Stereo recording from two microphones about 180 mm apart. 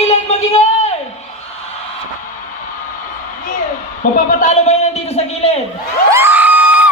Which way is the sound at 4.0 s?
50° left (ahead or behind).